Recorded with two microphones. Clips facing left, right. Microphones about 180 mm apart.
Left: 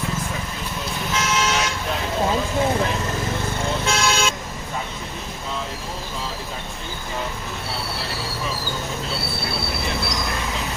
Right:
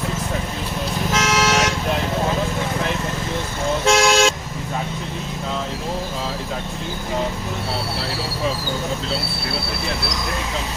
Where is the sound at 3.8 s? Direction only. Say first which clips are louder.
Right 8 dB; 85° right.